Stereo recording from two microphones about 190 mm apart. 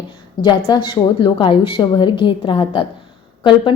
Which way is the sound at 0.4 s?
25° left (ahead or behind).